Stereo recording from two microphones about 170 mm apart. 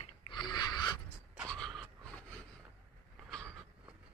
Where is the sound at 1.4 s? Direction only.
5° left (ahead or behind).